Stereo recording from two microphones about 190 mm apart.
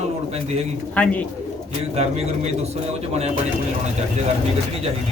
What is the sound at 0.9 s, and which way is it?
Speech, 5° left (ahead or behind).